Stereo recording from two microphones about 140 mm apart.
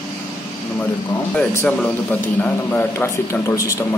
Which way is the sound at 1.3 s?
10° left (ahead or behind).